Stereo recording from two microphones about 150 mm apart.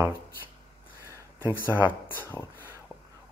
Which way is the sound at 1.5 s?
10° right (ahead or behind).